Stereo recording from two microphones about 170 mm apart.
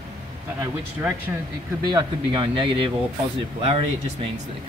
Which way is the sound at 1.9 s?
30° right (ahead or behind).